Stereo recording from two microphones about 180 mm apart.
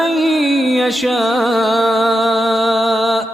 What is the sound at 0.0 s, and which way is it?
Music, centre (ahead or behind).